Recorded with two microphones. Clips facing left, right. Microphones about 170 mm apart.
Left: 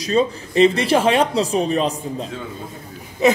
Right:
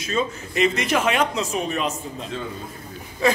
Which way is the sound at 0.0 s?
35° left (ahead or behind).